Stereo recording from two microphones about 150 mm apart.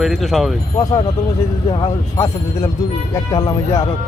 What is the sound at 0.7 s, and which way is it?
Speech, 25° left (ahead or behind).